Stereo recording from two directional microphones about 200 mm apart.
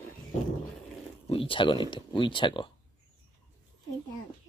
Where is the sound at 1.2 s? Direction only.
25° left (ahead or behind).